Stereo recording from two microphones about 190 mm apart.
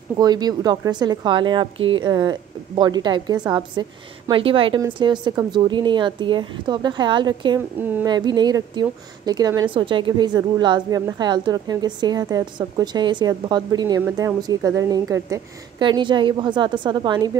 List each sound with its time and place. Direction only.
0.2 s a woman's voice: 20° right (ahead or behind)
7.8 s a sound: 10° right (ahead or behind)
8.1 s a woman's voice: 20° right (ahead or behind)